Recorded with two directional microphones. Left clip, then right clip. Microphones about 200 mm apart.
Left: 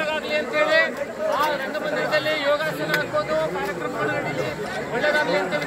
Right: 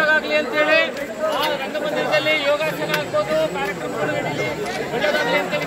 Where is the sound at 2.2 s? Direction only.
5° right (ahead or behind).